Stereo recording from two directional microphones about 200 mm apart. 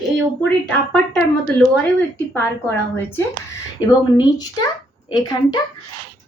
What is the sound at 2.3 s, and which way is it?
A woman's voice, 10° left (ahead or behind).